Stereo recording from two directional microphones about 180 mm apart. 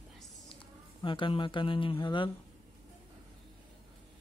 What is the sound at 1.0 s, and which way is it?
Speech, 30° left (ahead or behind).